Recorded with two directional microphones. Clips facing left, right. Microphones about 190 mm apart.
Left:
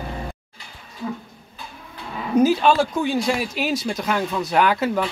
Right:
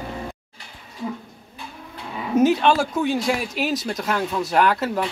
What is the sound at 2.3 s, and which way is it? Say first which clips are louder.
Speech: left 1 dB; centre (ahead or behind).